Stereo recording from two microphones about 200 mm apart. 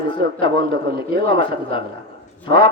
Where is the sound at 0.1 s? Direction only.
25° left (ahead or behind).